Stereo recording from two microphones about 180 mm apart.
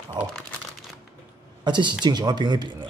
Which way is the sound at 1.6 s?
25° right (ahead or behind).